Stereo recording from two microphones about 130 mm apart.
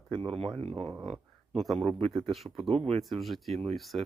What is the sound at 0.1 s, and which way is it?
Speech, 40° right (ahead or behind).